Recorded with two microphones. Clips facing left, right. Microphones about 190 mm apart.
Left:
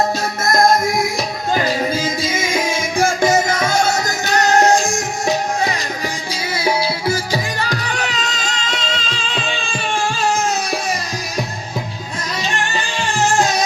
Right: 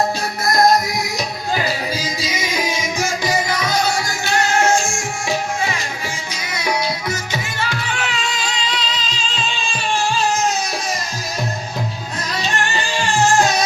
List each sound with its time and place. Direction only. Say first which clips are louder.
0.4 s music: even; 45° left (ahead or behind)
6.6 s music: left 2 dB; 30° left (ahead or behind)
7.6 s music: left 2 dB; 40° left (ahead or behind)